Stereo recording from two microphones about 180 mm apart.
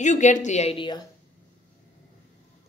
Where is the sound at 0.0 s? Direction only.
45° left (ahead or behind); by 1.0 s 25° left (ahead or behind).